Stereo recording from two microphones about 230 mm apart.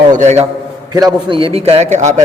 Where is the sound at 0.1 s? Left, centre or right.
Right.